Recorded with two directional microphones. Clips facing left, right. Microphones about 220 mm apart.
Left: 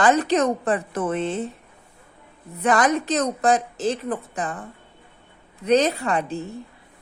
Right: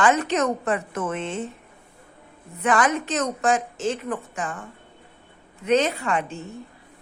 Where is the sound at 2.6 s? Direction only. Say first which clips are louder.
Left 2 dB; 35° left (ahead or behind).